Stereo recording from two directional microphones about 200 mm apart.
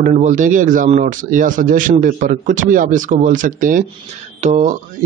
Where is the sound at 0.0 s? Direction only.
40° right (ahead or behind).